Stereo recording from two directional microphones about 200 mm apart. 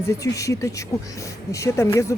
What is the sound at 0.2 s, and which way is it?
Speech, 15° left (ahead or behind).